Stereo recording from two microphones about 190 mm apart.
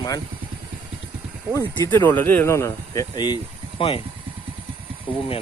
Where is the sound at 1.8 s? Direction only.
10° left (ahead or behind); by 4.0 s 25° left (ahead or behind).